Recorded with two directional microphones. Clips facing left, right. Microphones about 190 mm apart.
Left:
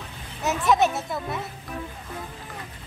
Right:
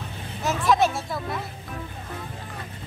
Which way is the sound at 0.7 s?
20° left (ahead or behind).